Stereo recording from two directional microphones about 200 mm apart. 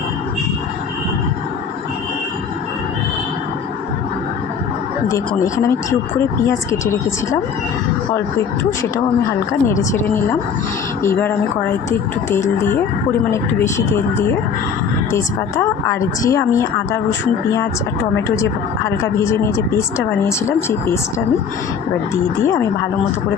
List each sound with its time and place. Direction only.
6.1 s speech: 15° left (ahead or behind)
9.5 s speech: 15° left (ahead or behind)
18.9 s speech: 15° left (ahead or behind)